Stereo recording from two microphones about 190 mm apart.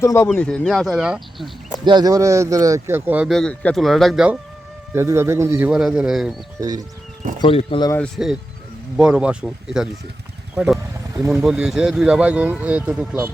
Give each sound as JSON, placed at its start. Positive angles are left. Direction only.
{"t": 0.0, "sound": "speech", "side_deg": 15}
{"t": 0.3, "sound": "speech", "side_deg": 5}
{"t": 1.8, "sound": "speech", "side_deg": -25}
{"t": 4.9, "sound": "speech", "side_deg": -15}
{"t": 6.6, "sound": "speech", "side_deg": -20}
{"t": 7.4, "sound": "speech", "side_deg": 25}
{"t": 7.9, "sound": "speech", "side_deg": 5}
{"t": 11.3, "sound": "speech", "side_deg": -5}